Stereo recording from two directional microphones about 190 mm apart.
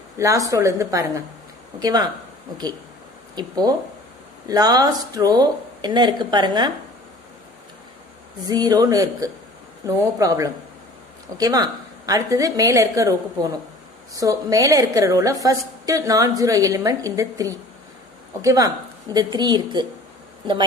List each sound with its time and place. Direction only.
0.2 s a woman's voice: 15° right (ahead or behind)
3.3 s speech: 20° right (ahead or behind)
8.5 s a woman's voice: 20° right (ahead or behind)